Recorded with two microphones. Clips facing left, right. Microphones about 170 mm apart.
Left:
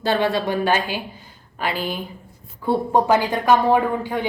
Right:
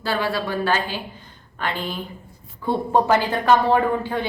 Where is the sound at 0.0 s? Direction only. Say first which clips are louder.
Left 4 dB; 20° left (ahead or behind).